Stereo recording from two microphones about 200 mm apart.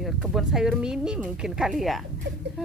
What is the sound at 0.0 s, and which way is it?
Speech, centre (ahead or behind).